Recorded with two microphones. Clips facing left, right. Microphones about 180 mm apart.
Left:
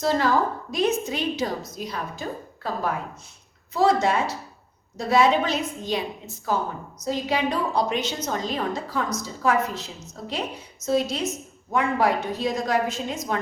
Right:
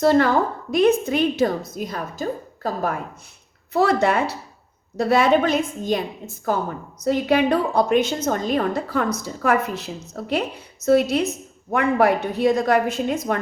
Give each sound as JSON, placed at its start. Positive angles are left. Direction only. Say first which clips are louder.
{"t": 0.0, "sound": "a woman's voice", "louder": "right 5 dB", "side_deg": -60}
{"t": 3.7, "sound": "a woman's voice", "louder": "right 2 dB", "side_deg": -60}